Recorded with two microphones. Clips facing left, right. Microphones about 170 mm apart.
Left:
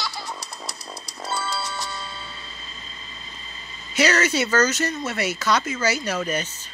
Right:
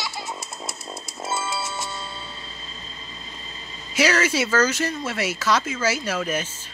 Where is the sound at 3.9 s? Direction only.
5° right (ahead or behind).